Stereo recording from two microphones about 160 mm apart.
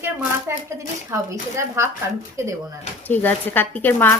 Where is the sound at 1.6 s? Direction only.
15° right (ahead or behind).